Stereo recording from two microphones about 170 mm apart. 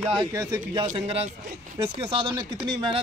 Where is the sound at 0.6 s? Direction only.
45° right (ahead or behind).